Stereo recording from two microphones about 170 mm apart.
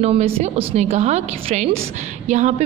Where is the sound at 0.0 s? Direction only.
35° right (ahead or behind).